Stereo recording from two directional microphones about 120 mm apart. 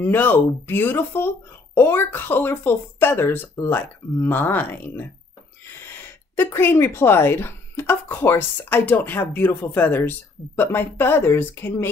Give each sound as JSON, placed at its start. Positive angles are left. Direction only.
{"t": 0.0, "sound": "speech", "side_deg": 15}